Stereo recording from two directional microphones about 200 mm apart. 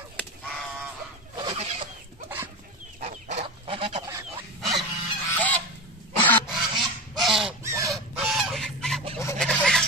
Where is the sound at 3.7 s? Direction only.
25° right (ahead or behind).